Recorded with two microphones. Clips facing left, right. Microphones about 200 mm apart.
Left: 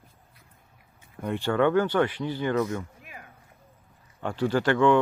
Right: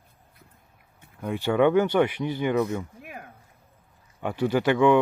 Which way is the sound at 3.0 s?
65° right (ahead or behind).